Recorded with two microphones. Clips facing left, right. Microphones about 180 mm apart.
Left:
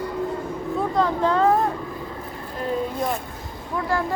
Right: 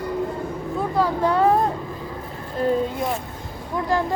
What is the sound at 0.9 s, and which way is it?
Speech, 10° right (ahead or behind).